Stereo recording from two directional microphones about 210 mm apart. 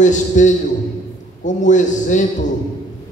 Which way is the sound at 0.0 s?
35° left (ahead or behind).